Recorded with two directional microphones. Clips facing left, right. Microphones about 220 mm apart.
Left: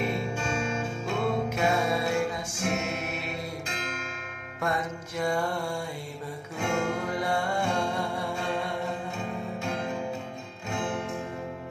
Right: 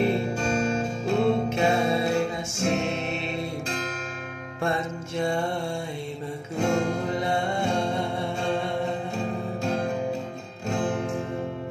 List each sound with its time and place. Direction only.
0.0 s music: 35° right (ahead or behind)
6.6 s music: 40° right (ahead or behind)
7.1 s music: 25° right (ahead or behind)
10.7 s music: 35° right (ahead or behind)